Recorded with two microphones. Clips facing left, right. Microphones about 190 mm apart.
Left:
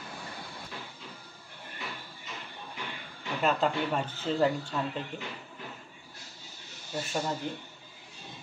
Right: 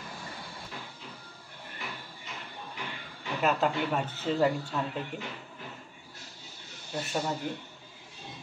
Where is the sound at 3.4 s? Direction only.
5° right (ahead or behind).